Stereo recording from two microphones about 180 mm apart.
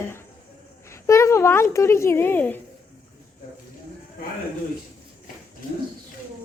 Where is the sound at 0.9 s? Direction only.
15° left (ahead or behind).